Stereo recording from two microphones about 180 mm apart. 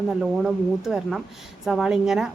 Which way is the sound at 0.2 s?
Centre (ahead or behind).